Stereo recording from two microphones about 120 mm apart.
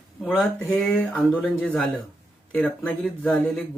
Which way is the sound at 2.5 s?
15° left (ahead or behind).